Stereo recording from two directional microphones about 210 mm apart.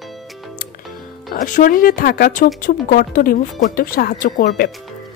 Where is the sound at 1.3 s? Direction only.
40° left (ahead or behind).